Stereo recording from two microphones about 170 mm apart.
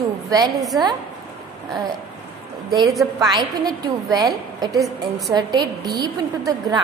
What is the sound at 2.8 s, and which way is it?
Speech, centre (ahead or behind).